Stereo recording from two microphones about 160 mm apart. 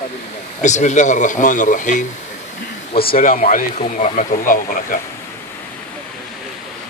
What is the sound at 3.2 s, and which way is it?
A man's voice, 55° left (ahead or behind).